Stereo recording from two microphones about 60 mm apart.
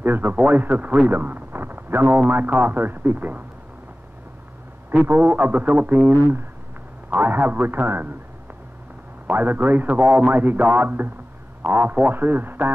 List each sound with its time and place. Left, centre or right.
0.0 s a man's voice: right
4.9 s a man's voice: right
9.3 s a man's voice: right